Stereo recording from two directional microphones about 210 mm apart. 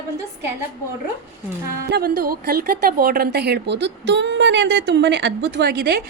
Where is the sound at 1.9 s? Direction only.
50° right (ahead or behind).